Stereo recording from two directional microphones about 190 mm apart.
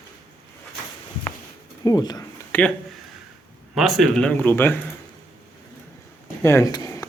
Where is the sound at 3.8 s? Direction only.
Centre (ahead or behind).